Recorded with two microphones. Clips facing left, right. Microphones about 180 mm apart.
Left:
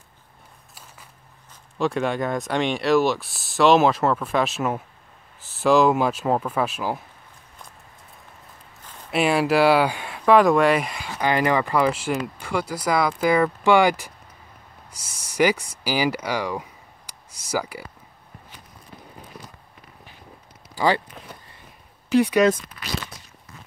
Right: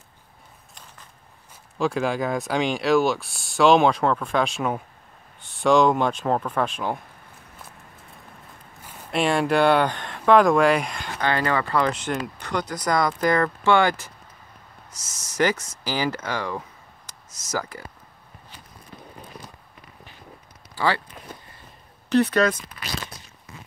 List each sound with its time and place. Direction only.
1.8 s speech: centre (ahead or behind)
9.1 s speech: 5° left (ahead or behind)
15.3 s speech: 10° left (ahead or behind)
20.7 s speech: 15° left (ahead or behind)
22.1 s speech: 10° left (ahead or behind)